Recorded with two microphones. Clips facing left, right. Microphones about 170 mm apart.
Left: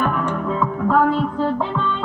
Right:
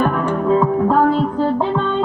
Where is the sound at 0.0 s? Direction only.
35° right (ahead or behind).